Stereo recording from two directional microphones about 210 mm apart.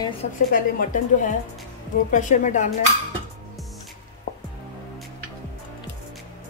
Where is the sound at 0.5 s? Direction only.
40° left (ahead or behind).